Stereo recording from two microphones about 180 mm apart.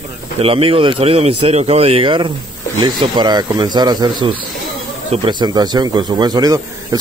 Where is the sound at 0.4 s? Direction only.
30° right (ahead or behind).